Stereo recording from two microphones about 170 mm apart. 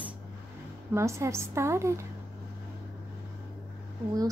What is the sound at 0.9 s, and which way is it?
A woman's voice, 15° right (ahead or behind).